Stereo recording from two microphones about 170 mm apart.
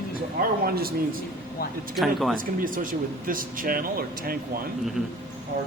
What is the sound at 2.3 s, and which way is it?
Speech, 55° right (ahead or behind).